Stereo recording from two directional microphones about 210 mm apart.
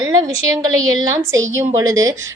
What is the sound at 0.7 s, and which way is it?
Speech, 75° right (ahead or behind).